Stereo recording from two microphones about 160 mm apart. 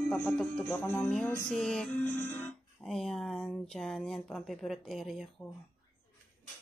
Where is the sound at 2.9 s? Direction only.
Centre (ahead or behind).